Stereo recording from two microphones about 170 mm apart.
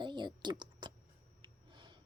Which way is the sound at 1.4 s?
30° right (ahead or behind).